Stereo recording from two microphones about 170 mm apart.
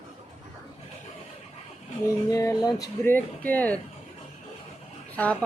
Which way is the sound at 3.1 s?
10° left (ahead or behind).